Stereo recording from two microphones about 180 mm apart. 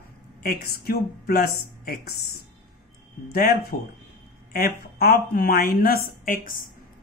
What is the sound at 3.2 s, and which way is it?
Speech, 60° left (ahead or behind).